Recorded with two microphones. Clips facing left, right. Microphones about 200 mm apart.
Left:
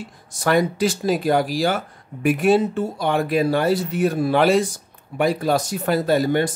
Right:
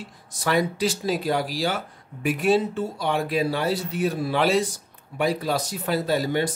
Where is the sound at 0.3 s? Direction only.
45° left (ahead or behind).